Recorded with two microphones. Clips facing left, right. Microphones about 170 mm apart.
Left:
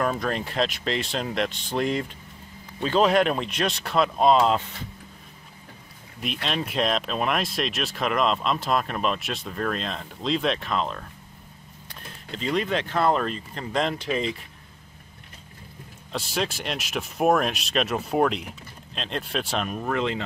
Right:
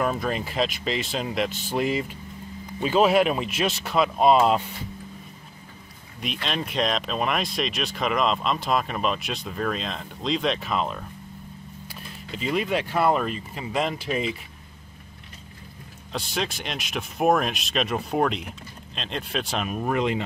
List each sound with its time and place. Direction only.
0.0 s speech: 5° right (ahead or behind)
6.2 s speech: centre (ahead or behind)
16.1 s speech: centre (ahead or behind)
19.8 s speech: 15° right (ahead or behind)